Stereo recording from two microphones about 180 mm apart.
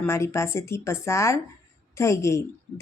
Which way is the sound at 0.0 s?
15° left (ahead or behind).